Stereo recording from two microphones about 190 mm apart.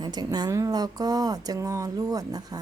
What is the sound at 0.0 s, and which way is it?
Speech, 20° right (ahead or behind).